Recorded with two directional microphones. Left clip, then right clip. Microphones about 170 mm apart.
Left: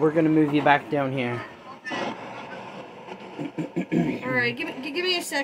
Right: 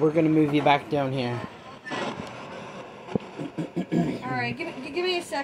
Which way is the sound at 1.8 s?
50° left (ahead or behind).